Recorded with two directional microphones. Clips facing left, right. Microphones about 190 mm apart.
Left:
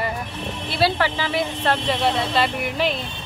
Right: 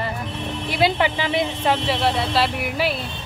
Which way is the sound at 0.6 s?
15° right (ahead or behind).